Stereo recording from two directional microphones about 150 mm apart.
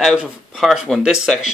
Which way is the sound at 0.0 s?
5° right (ahead or behind).